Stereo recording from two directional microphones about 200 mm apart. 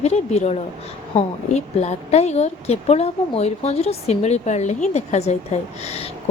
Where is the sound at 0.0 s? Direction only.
35° left (ahead or behind).